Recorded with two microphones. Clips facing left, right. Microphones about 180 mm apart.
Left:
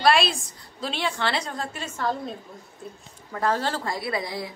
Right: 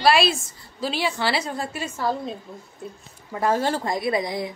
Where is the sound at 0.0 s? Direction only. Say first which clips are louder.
Right 2 dB; 5° right (ahead or behind).